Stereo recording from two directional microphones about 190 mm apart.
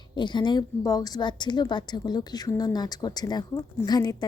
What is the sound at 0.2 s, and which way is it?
A woman's voice, 25° left (ahead or behind).